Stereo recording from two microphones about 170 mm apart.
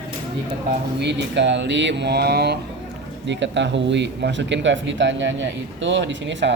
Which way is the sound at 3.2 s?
90° right.